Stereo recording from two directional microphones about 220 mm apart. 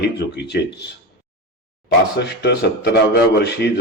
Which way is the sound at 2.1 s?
50° left (ahead or behind).